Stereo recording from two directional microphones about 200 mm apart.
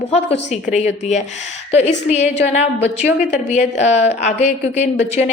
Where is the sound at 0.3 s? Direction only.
30° left (ahead or behind).